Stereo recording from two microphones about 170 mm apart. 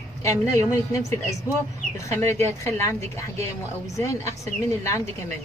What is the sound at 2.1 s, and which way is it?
Speech, 15° left (ahead or behind).